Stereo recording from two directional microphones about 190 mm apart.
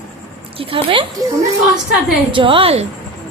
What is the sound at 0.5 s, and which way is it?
Speech, 30° right (ahead or behind).